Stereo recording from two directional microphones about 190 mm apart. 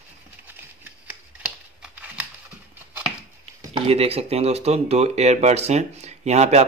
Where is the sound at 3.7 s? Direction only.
30° right (ahead or behind).